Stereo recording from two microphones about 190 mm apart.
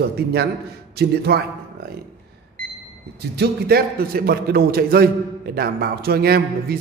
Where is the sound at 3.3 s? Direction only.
55° right (ahead or behind).